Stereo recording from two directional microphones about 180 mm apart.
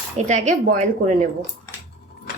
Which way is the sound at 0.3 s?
40° right (ahead or behind).